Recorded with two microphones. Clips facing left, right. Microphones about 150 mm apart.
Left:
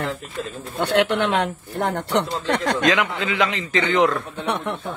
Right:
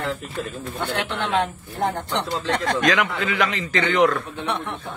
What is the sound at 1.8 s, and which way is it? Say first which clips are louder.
Speech: left 3 dB; 80° left.